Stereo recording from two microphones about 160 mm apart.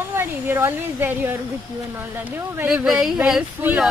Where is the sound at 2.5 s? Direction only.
10° right (ahead or behind).